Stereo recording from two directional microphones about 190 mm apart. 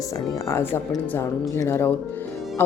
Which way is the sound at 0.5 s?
10° left (ahead or behind).